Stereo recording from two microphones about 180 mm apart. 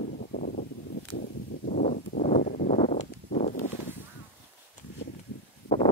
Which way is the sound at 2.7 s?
35° left (ahead or behind).